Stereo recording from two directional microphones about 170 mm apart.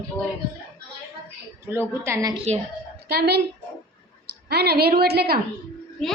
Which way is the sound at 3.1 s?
75° right (ahead or behind).